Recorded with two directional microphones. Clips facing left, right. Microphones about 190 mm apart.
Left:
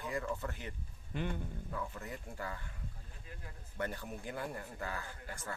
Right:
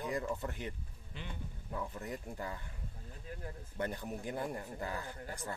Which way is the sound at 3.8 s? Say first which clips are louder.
Right 2 dB; 15° right (ahead or behind).